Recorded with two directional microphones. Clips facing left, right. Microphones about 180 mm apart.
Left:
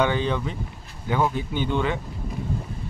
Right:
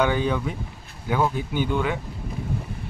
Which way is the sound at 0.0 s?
10° right (ahead or behind).